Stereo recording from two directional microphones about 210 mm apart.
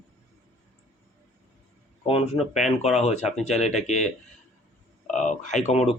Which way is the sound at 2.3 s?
Centre (ahead or behind).